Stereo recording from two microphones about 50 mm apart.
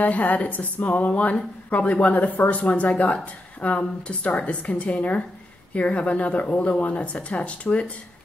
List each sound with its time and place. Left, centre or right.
0.0 s a woman's voice: left